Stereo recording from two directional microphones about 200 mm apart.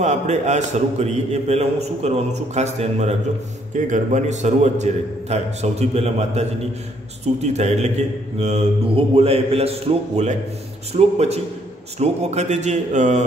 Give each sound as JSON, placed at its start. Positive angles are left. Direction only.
{"t": 0.0, "sound": "a man's voice", "side_deg": -35}
{"t": 7.4, "sound": "a man's voice", "side_deg": -35}